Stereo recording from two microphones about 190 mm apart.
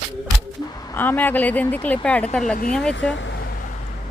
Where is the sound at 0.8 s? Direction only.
15° left (ahead or behind).